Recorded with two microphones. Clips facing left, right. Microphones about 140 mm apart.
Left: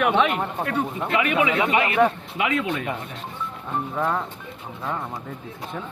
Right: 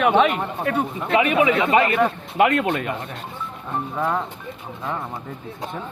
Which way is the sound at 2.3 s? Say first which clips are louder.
Right 6 dB; 50° right (ahead or behind).